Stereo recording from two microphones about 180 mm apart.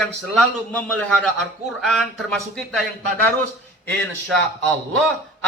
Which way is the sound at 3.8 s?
10° left (ahead or behind).